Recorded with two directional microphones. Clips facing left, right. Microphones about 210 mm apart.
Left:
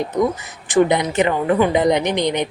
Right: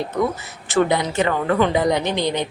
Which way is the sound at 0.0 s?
15° left (ahead or behind).